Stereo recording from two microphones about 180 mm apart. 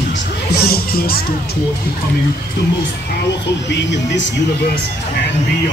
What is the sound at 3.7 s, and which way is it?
Speech, 75° left (ahead or behind).